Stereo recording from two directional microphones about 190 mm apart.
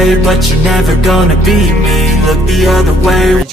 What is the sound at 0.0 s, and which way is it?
Music, centre (ahead or behind).